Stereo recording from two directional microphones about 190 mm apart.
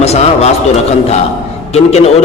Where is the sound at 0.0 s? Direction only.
35° left (ahead or behind).